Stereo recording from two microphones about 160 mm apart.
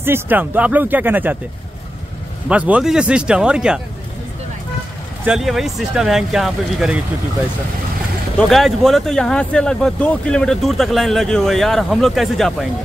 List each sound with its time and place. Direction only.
0.0 s speech: 10° right (ahead or behind)
2.4 s speech: 10° right (ahead or behind)
5.2 s speech: 5° right (ahead or behind)
8.4 s speech: centre (ahead or behind)